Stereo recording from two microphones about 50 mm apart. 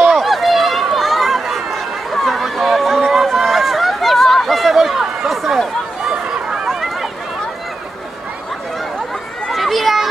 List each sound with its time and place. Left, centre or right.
0.1 s run: centre
3.3 s chatter: centre
6.2 s run: centre
6.7 s a sound: centre
8.7 s chatter: centre